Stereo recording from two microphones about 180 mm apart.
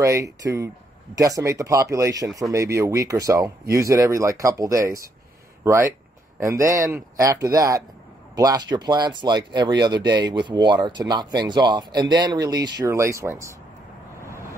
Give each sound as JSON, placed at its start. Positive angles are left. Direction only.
{"t": 0.0, "sound": "speech", "side_deg": -15}